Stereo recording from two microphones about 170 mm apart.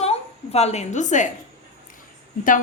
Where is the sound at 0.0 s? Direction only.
40° left (ahead or behind).